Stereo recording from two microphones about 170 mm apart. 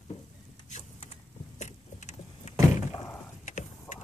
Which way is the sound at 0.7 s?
40° left (ahead or behind).